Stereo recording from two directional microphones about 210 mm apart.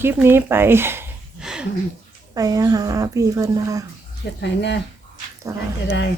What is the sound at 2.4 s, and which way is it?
Speech, 15° right (ahead or behind).